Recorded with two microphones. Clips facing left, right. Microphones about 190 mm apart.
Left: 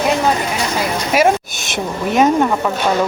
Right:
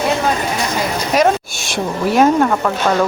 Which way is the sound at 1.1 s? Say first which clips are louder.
Even; 5° left (ahead or behind).